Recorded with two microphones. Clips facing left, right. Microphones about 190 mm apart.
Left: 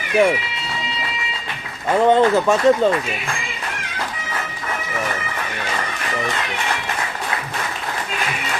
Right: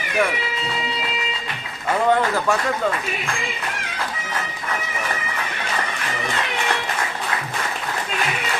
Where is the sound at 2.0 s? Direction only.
20° left (ahead or behind).